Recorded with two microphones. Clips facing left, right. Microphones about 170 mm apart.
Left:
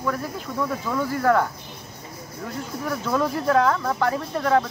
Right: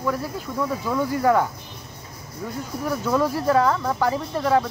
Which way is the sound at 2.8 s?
5° right (ahead or behind).